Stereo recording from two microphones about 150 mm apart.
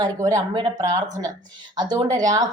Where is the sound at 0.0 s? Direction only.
25° right (ahead or behind).